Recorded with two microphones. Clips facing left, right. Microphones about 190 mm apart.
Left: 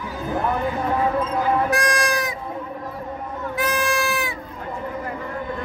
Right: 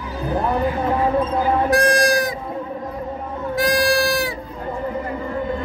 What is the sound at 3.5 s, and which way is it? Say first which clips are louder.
Bleat: right 5 dB; 40° right (ahead or behind).